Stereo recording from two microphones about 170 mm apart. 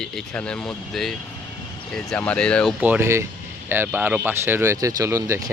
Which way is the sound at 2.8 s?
10° right (ahead or behind).